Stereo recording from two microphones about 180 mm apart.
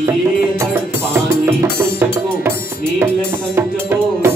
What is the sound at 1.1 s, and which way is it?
Music, 15° right (ahead or behind).